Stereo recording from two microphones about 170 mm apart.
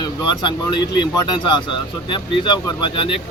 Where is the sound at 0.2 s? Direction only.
25° left (ahead or behind).